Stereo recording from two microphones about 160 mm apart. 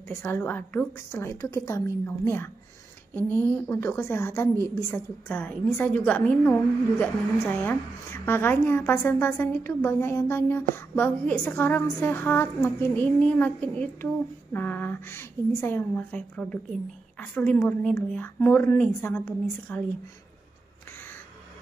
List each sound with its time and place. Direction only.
0.2 s a woman's voice: 15° left (ahead or behind)